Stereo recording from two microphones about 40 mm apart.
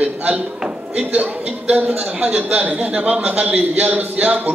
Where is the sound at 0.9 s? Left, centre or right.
Right.